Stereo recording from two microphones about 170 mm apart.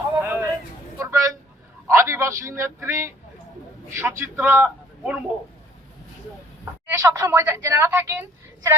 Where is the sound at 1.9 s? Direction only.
15° right (ahead or behind).